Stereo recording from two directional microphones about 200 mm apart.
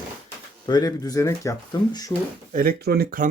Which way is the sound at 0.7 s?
20° left (ahead or behind).